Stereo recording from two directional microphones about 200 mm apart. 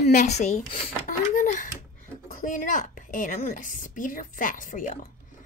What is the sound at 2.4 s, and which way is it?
A woman's voice, 40° left (ahead or behind).